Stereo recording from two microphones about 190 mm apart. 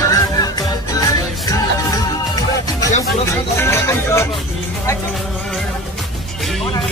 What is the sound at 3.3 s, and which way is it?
Music, 15° left (ahead or behind).